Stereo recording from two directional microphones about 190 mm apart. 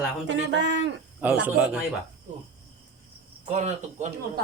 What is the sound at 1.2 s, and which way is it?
Speech, 5° right (ahead or behind).